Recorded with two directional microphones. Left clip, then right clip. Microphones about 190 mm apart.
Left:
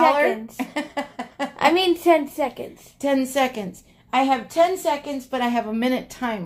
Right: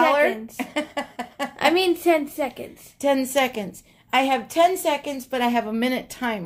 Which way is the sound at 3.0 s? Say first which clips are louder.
Even; 25° right (ahead or behind).